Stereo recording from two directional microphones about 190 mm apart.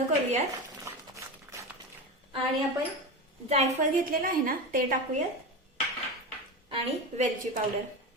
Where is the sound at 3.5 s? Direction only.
35° right (ahead or behind).